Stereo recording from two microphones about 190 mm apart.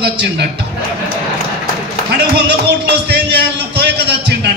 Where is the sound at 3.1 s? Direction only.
60° right (ahead or behind).